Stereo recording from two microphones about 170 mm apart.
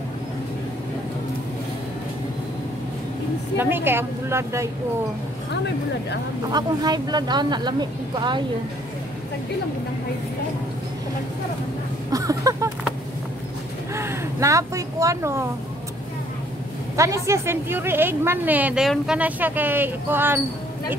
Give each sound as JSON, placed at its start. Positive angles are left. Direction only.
{"t": 3.5, "sound": "a woman's voice", "side_deg": -15}
{"t": 6.5, "sound": "speech", "side_deg": -25}
{"t": 12.1, "sound": "a sound", "side_deg": -20}
{"t": 13.9, "sound": "speech", "side_deg": -15}
{"t": 16.9, "sound": "a woman's voice", "side_deg": -15}